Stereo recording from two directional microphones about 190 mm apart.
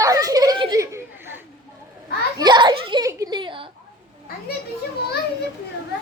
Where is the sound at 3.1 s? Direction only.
20° right (ahead or behind).